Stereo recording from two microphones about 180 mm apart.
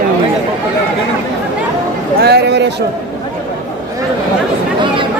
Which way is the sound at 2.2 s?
65° right (ahead or behind).